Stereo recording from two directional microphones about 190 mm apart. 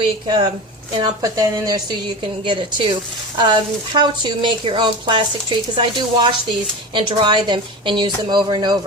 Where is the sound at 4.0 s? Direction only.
25° right (ahead or behind).